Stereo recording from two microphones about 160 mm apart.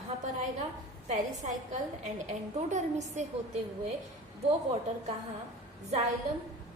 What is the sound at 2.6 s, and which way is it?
Speech, 45° right (ahead or behind).